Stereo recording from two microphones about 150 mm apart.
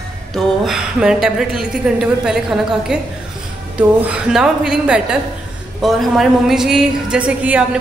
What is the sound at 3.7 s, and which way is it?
A woman's voice, 10° right (ahead or behind).